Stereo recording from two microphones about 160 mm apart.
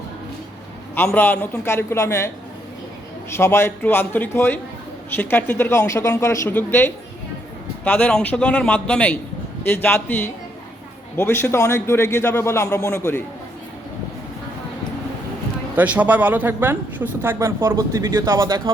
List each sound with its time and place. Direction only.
0.9 s a man's voice: 10° left (ahead or behind)
3.3 s a man's voice: 15° left (ahead or behind)
15.7 s speech: 10° right (ahead or behind)